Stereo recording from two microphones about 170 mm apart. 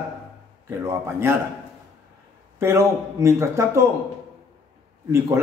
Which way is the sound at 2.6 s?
15° right (ahead or behind).